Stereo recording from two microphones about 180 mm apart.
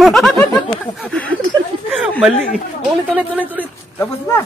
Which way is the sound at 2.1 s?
5° left (ahead or behind).